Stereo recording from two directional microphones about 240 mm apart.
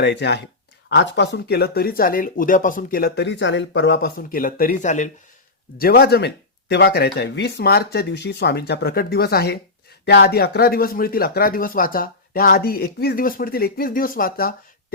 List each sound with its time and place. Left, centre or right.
0.0 s speech: left